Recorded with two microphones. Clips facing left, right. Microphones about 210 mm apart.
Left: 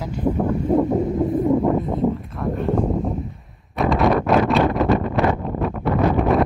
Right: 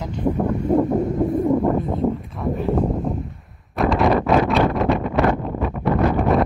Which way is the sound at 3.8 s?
Centre (ahead or behind).